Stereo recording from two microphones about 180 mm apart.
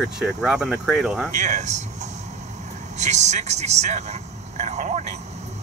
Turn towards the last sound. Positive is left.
turn(degrees=-40)  # may be behind; listen again after turning